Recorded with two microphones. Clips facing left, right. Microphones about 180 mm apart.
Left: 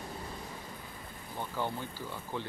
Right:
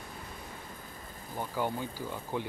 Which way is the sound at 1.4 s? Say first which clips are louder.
Right 3 dB; 10° right (ahead or behind).